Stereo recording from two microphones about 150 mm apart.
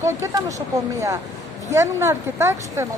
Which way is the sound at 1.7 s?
20° right (ahead or behind).